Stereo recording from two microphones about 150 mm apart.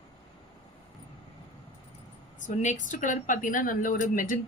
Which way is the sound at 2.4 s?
55° left (ahead or behind).